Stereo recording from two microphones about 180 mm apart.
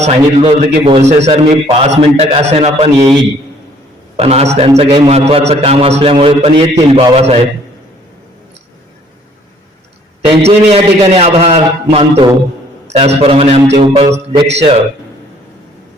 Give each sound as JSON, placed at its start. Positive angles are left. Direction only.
{"t": 0.0, "sound": "a man's voice", "side_deg": -35}
{"t": 4.2, "sound": "a man's voice", "side_deg": -35}
{"t": 10.2, "sound": "a man's voice", "side_deg": -35}